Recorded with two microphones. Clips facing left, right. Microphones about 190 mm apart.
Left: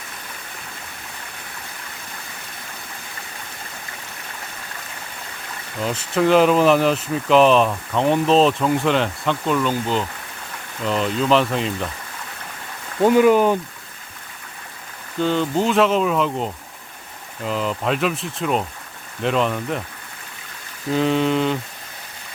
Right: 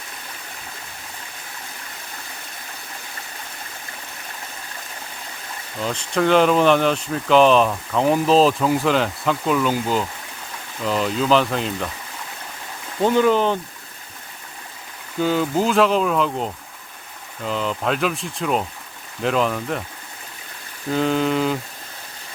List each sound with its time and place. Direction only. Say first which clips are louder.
5.8 s speech: left 1 dB; 5° left (ahead or behind)
13.0 s speech: left 3 dB; 10° left (ahead or behind)
15.2 s speech: even; 5° right (ahead or behind)
20.9 s speech: left 1 dB; centre (ahead or behind)